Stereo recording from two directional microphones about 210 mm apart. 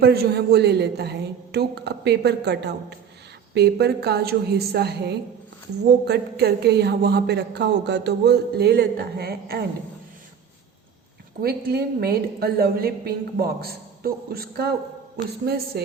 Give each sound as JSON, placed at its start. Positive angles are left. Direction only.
{"t": 0.0, "sound": "a woman's voice", "side_deg": -50}
{"t": 11.3, "sound": "a woman's voice", "side_deg": -50}